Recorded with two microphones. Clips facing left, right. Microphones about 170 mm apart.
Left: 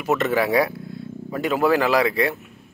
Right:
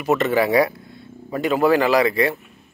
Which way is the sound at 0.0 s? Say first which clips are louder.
Right 2 dB; centre (ahead or behind).